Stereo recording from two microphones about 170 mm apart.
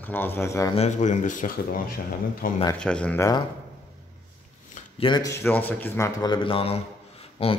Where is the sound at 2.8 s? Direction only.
5° left (ahead or behind).